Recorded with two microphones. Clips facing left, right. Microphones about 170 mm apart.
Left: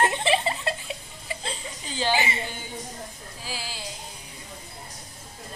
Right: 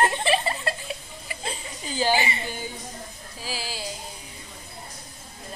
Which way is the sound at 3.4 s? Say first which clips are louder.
Right 3 dB; 10° right (ahead or behind).